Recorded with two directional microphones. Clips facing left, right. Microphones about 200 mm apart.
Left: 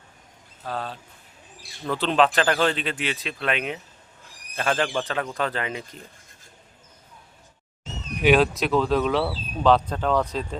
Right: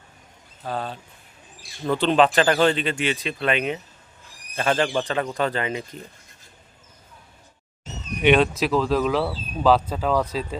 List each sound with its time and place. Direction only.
0.6 s speech: centre (ahead or behind)
8.2 s speech: centre (ahead or behind)